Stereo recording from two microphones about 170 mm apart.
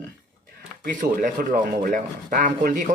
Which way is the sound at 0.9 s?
50° right (ahead or behind).